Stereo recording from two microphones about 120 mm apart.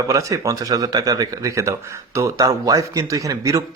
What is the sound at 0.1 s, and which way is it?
Speech, 25° right (ahead or behind).